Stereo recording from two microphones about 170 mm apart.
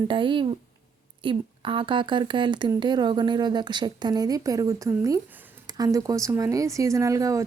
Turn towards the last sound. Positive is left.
turn(degrees=-20)  # may be behind; listen again after turning